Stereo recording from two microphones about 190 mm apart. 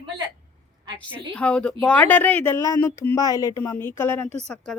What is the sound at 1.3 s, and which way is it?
Speech, 5° left (ahead or behind).